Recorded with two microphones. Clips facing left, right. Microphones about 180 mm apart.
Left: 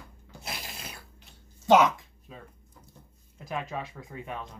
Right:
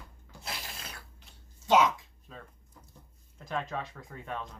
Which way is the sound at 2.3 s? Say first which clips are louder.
Left 1 dB; 10° left (ahead or behind).